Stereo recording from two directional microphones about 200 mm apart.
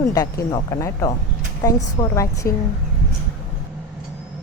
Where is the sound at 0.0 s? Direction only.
20° left (ahead or behind).